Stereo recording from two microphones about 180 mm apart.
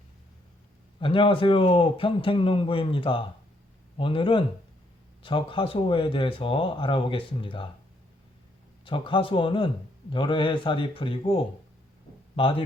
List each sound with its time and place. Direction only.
0.9 s a man's voice: 30° left (ahead or behind)
8.8 s a man's voice: 30° left (ahead or behind)